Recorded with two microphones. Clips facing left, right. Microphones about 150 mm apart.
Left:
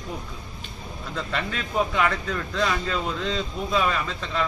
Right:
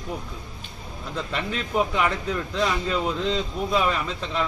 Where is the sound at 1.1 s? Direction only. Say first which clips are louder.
Right 1 dB; 20° right (ahead or behind).